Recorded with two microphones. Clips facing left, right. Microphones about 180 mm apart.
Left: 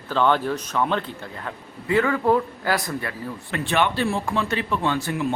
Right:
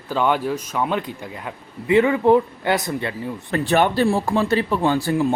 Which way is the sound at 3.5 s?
40° right (ahead or behind).